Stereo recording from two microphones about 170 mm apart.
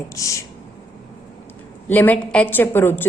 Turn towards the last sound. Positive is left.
turn(degrees=10)  # may be behind; listen again after turning